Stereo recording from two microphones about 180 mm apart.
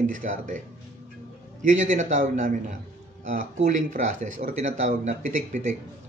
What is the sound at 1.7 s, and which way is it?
Speech, 40° right (ahead or behind).